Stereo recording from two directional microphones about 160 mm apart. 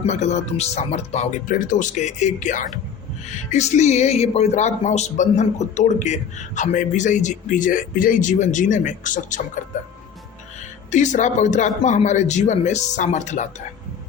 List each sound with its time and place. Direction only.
0.0 s speech: 45° left (ahead or behind)
10.9 s speech: 50° left (ahead or behind)